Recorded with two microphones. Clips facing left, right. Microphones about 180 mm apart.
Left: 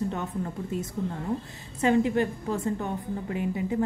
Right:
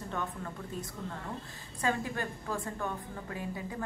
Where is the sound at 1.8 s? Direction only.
20° left (ahead or behind).